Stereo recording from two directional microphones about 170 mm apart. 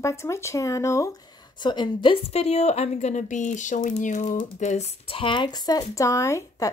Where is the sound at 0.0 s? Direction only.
15° left (ahead or behind).